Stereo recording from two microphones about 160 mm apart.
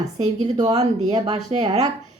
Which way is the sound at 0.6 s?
25° right (ahead or behind).